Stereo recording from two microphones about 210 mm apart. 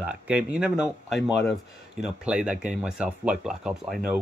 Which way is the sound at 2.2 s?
5° right (ahead or behind).